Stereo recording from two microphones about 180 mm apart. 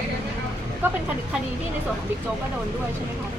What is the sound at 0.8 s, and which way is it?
Speech, 10° right (ahead or behind).